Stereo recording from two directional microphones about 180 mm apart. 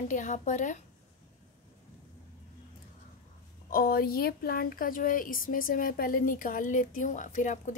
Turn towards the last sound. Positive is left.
turn(degrees=45)  # may be behind; listen again after turning